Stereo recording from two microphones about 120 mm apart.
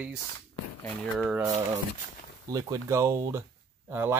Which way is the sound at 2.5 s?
30° right (ahead or behind).